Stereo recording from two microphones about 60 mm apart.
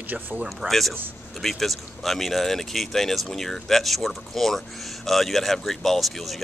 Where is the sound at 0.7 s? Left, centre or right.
Centre.